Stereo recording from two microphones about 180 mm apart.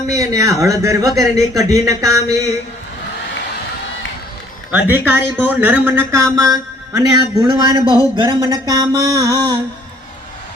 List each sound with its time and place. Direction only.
0.1 s speech: 20° right (ahead or behind)
4.7 s a man's voice: 10° right (ahead or behind)